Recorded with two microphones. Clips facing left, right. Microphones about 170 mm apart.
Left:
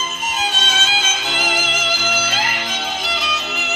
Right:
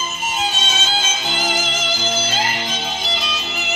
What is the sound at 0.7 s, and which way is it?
Music, 25° right (ahead or behind).